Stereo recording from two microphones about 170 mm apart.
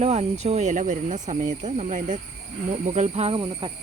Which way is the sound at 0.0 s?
40° right (ahead or behind).